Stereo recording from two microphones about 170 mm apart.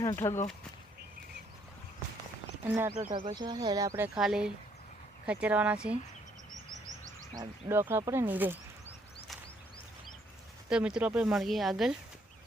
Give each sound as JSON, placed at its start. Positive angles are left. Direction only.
{"t": 0.0, "sound": "speech", "side_deg": 20}
{"t": 2.6, "sound": "speech", "side_deg": -15}
{"t": 3.3, "sound": "speech", "side_deg": -25}
{"t": 4.1, "sound": "speech", "side_deg": -5}
{"t": 7.3, "sound": "speech", "side_deg": -15}
{"t": 10.7, "sound": "speech", "side_deg": -5}